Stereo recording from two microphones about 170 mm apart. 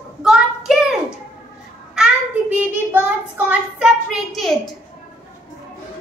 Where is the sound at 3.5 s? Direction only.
5° right (ahead or behind).